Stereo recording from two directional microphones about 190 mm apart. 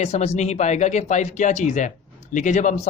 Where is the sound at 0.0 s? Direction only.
35° left (ahead or behind).